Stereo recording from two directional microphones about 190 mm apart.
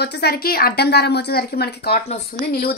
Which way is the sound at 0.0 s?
55° left (ahead or behind).